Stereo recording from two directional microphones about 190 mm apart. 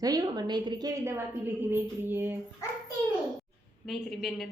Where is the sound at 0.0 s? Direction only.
20° right (ahead or behind).